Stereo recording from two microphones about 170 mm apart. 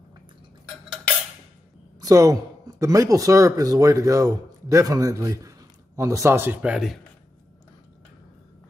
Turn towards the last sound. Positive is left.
turn(degrees=-5)  # may be behind; listen again after turning